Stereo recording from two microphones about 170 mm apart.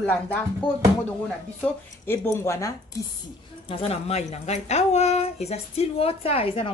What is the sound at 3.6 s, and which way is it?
A woman's voice, 35° left (ahead or behind).